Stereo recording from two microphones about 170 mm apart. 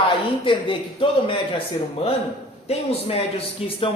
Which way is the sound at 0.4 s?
30° left (ahead or behind).